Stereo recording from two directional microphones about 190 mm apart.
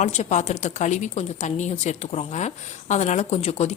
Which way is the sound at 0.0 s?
35° left (ahead or behind).